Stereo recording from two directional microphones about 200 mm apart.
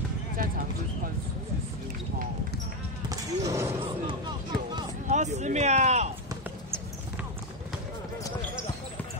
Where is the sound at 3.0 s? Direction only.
15° right (ahead or behind).